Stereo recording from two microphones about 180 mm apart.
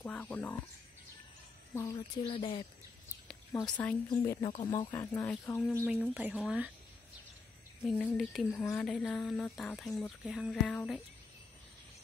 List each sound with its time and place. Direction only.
0.0 s speech: 10° left (ahead or behind)
1.8 s speech: 15° left (ahead or behind)
2.2 s speech: 30° left (ahead or behind)
3.6 s speech: 5° left (ahead or behind)
4.1 s speech: 25° left (ahead or behind)
4.9 s speech: 15° left (ahead or behind)
6.1 s speech: 5° right (ahead or behind)
7.8 s speech: 5° left (ahead or behind)
8.5 s speech: 15° left (ahead or behind)
8.8 s speech: centre (ahead or behind)